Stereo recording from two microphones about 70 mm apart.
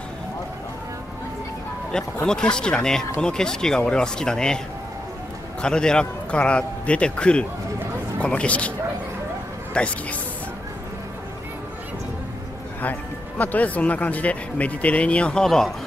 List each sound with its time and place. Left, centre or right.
2.2 s a man's voice: centre
5.6 s a man's voice: centre
9.8 s a man's voice: centre
13.4 s speech: left
15.4 s speech: centre